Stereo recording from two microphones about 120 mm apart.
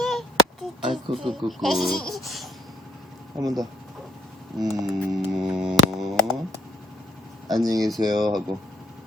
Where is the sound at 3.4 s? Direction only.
30° right (ahead or behind).